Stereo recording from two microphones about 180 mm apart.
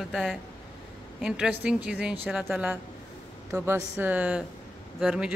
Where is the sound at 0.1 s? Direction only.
5° left (ahead or behind).